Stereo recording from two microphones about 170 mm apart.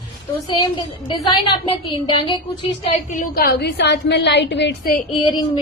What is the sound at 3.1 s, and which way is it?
A woman's voice, 60° left (ahead or behind).